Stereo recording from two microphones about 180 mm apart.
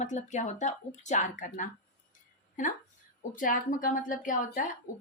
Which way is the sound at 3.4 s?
45° left (ahead or behind).